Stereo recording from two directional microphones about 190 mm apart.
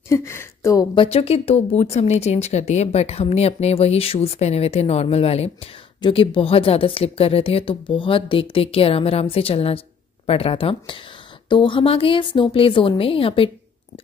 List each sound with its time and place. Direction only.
0.1 s a woman's voice: 15° left (ahead or behind)
0.9 s a woman's voice: 30° left (ahead or behind)